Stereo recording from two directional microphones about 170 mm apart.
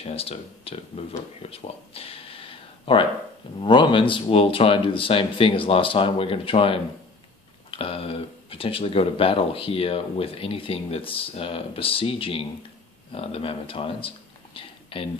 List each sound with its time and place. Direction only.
0.0 s speech: 35° left (ahead or behind)